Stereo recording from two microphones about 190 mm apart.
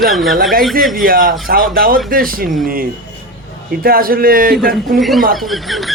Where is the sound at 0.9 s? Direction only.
50° right (ahead or behind).